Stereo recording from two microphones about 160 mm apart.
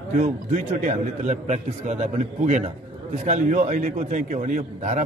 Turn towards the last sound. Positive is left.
turn(degrees=-50)  # may be behind; listen again after turning